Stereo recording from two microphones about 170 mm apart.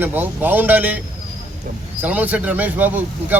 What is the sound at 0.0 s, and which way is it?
A man's voice, 10° right (ahead or behind).